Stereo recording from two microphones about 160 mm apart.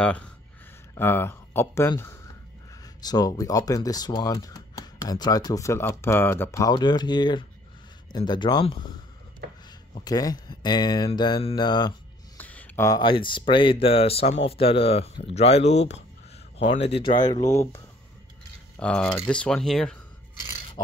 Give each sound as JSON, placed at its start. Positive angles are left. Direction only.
{"t": 0.0, "sound": "speech", "side_deg": 5}
{"t": 10.0, "sound": "speech", "side_deg": 25}
{"t": 12.4, "sound": "a sound", "side_deg": 10}
{"t": 13.0, "sound": "speech", "side_deg": 30}
{"t": 18.8, "sound": "speech", "side_deg": 5}